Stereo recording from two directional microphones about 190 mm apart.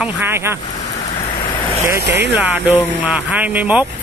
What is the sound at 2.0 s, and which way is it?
Speech, 60° right (ahead or behind).